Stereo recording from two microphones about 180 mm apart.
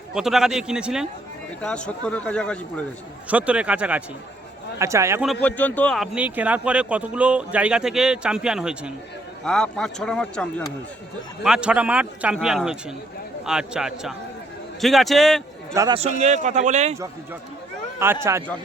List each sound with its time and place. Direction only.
0.1 s speech: centre (ahead or behind)
1.6 s speech: 5° left (ahead or behind)
3.2 s speech: 5° right (ahead or behind)
5.2 s speech: 5° left (ahead or behind)
15.7 s a man's voice: 20° right (ahead or behind)
16.0 s speech: 40° right (ahead or behind)
18.0 s speech: 15° right (ahead or behind)